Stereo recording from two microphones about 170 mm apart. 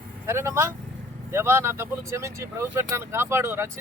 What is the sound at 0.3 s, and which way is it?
Speech, 15° right (ahead or behind).